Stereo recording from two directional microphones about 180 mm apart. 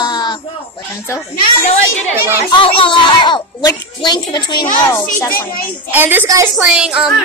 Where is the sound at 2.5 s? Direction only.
30° left (ahead or behind).